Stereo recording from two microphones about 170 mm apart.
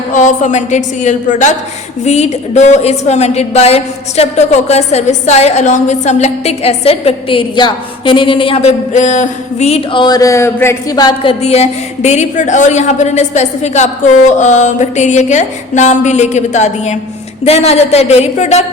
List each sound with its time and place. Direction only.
0.1 s a woman's voice: 45° left (ahead or behind)